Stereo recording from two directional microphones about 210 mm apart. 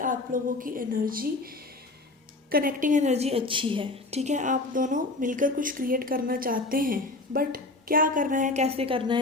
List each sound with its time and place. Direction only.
0.0 s a woman's voice: 40° right (ahead or behind)